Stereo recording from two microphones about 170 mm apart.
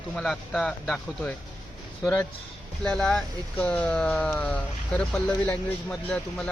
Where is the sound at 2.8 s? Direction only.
5° left (ahead or behind).